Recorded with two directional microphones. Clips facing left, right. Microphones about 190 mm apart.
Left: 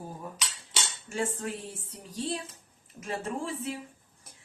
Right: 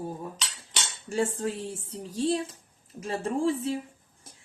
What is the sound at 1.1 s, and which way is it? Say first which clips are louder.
A woman's voice: right 5 dB; 30° right (ahead or behind).